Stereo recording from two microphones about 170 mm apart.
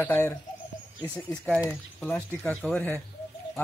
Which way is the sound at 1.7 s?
10° left (ahead or behind).